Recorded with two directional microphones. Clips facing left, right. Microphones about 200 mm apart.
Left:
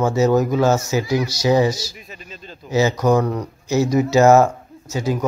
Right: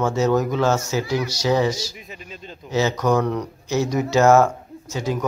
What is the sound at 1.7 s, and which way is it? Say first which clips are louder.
Speech: right 1 dB; 15° right (ahead or behind).